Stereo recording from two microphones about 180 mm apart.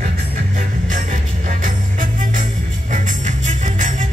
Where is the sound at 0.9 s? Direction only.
50° right (ahead or behind).